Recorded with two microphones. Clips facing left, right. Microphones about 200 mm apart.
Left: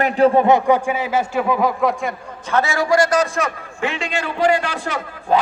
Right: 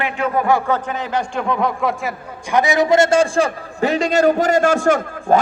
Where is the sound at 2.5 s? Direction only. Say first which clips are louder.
Right 3 dB; 15° right (ahead or behind); by 5.4 s 45° right (ahead or behind).